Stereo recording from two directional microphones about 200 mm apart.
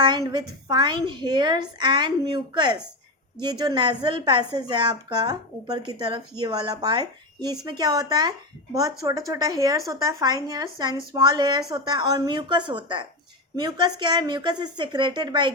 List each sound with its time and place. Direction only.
0.0 s a woman's voice: 20° right (ahead or behind)